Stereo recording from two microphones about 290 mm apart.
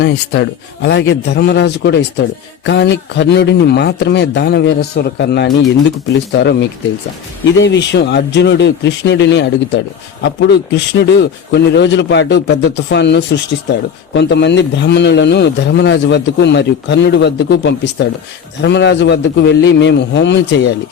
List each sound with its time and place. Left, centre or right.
0.0 s speech: left